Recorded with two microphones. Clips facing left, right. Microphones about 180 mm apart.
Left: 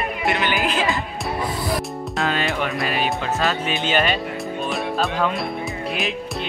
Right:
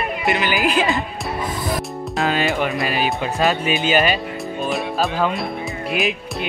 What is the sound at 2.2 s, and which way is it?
Speech, centre (ahead or behind).